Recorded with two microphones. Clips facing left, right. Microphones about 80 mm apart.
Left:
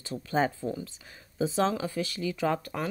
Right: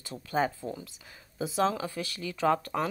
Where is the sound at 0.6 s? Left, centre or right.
Centre.